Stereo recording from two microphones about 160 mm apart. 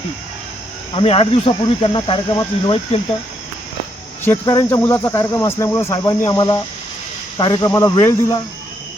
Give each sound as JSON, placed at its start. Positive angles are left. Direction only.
{"t": 0.9, "sound": "speech", "side_deg": 35}
{"t": 4.4, "sound": "speech", "side_deg": 15}